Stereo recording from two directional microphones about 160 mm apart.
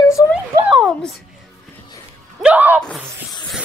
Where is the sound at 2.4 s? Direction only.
10° right (ahead or behind).